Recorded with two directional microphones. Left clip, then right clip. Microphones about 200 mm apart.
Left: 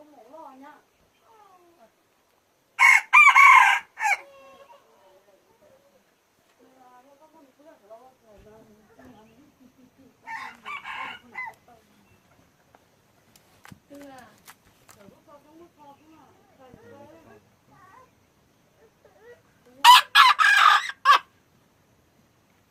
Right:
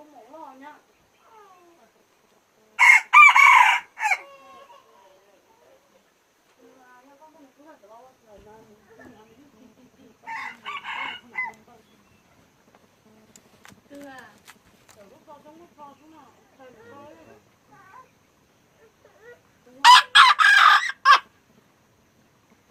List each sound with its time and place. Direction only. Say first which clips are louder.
2.7 s chicken: right 2 dB; centre (ahead or behind)
10.3 s chicken: right 2 dB; 50° left (ahead or behind)
19.8 s chicken: right 1 dB; 15° left (ahead or behind)